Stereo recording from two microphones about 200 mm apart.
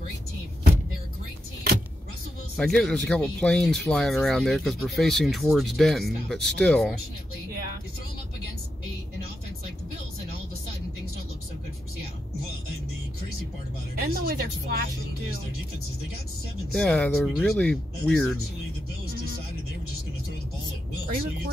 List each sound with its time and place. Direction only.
2.5 s speech: centre (ahead or behind)
14.0 s speech: 50° right (ahead or behind)
16.7 s speech: 5° left (ahead or behind)